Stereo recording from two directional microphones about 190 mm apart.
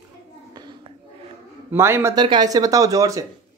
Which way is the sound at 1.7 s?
15° right (ahead or behind).